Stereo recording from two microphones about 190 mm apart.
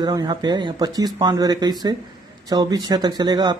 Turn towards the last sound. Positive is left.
turn(degrees=-20)  # may be behind; listen again after turning